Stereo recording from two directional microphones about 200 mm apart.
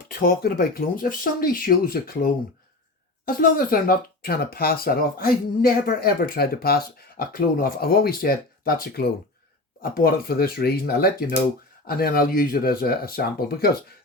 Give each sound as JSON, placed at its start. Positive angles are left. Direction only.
{"t": 0.0, "sound": "speech", "side_deg": 45}